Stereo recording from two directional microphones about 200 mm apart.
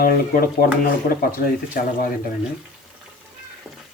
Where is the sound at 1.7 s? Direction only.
45° left (ahead or behind).